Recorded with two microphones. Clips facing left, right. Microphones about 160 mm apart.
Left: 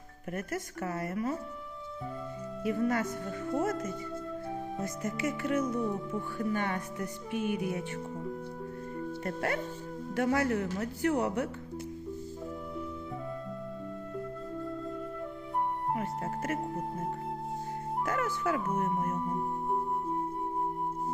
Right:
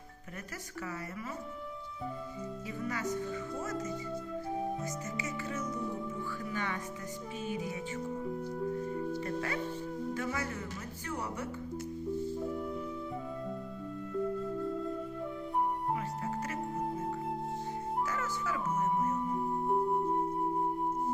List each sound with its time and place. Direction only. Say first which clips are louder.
0.3 s speech: left 7 dB; 50° left (ahead or behind)
2.6 s speech: left 8 dB; 55° left (ahead or behind)
4.8 s speech: left 5 dB; 55° left (ahead or behind)
9.2 s speech: left 2 dB; 60° left (ahead or behind)
16.0 s music: left 2 dB; 50° left (ahead or behind)
18.1 s music: left 5 dB; 55° left (ahead or behind)